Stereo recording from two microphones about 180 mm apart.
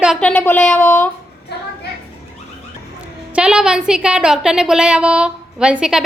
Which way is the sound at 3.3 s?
5° right (ahead or behind).